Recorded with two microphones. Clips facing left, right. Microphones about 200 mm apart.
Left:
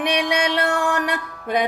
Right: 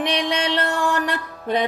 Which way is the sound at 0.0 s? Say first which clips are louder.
Left 1 dB; 10° left (ahead or behind).